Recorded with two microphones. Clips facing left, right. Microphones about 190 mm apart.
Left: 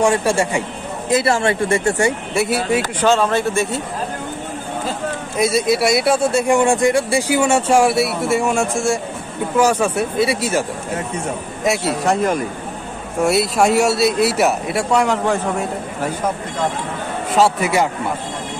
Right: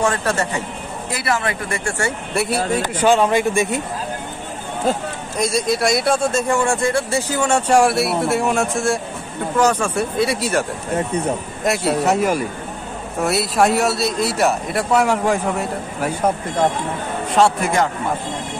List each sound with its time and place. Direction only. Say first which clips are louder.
0.0 s speech: left 4 dB; 15° left (ahead or behind)
1.1 s speech: left 6 dB; 30° left (ahead or behind)
2.3 s speech: right 1 dB; centre (ahead or behind)
3.0 s speech: right 3 dB; 15° right (ahead or behind)
5.4 s speech: left 3 dB; 5° left (ahead or behind)
11.6 s speech: even; centre (ahead or behind)
17.3 s speech: left 1 dB; centre (ahead or behind)